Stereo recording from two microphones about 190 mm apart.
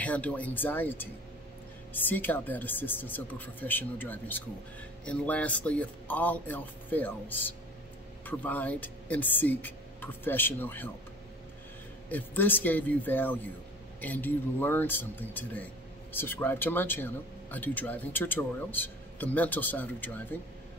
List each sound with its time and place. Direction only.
0.0 s speech: 10° left (ahead or behind)
12.1 s speech: 10° left (ahead or behind)